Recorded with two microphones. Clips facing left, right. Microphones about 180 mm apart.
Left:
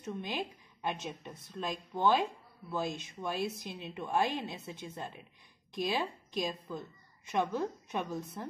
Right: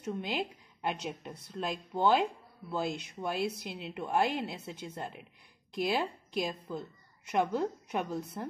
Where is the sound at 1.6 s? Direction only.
10° right (ahead or behind).